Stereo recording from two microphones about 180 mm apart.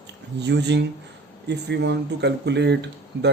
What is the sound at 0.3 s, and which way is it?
Speech, 70° right (ahead or behind).